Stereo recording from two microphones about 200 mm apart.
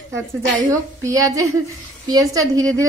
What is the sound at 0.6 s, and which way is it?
A woman's voice, 15° right (ahead or behind).